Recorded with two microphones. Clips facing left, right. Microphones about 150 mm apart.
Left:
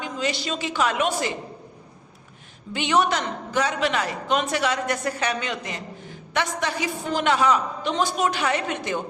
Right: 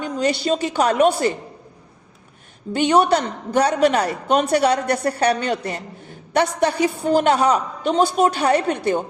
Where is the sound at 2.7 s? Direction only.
40° right (ahead or behind).